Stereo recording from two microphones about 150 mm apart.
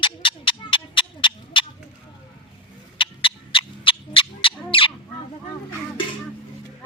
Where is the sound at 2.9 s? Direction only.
35° left (ahead or behind).